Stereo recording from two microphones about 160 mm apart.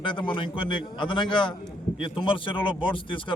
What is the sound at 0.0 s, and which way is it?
A man's voice, 30° left (ahead or behind).